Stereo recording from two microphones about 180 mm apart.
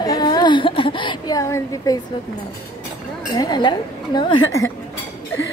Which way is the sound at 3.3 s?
20° left (ahead or behind).